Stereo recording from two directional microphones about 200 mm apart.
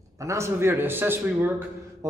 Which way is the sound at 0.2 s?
15° right (ahead or behind).